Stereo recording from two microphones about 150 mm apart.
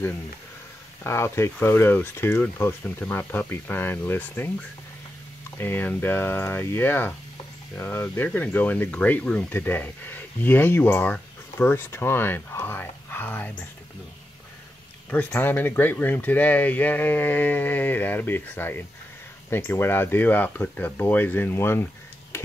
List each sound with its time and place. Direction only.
1.0 s speech: 15° left (ahead or behind)
15.0 s speech: 10° left (ahead or behind)
22.3 s a sound: 15° left (ahead or behind)